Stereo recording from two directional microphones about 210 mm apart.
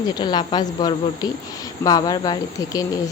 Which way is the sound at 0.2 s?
20° left (ahead or behind).